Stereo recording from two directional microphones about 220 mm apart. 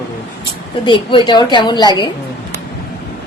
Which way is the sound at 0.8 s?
20° left (ahead or behind).